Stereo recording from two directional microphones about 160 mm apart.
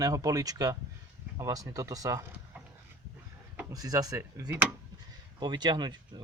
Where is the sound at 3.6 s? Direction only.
20° right (ahead or behind).